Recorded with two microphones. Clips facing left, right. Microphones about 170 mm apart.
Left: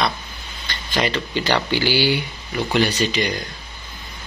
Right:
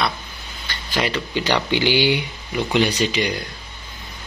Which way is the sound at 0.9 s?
10° right (ahead or behind).